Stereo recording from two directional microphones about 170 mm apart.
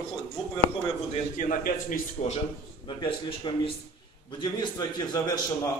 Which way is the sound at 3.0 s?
30° left (ahead or behind).